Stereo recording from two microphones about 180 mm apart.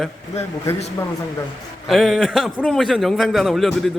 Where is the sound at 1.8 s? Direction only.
Centre (ahead or behind).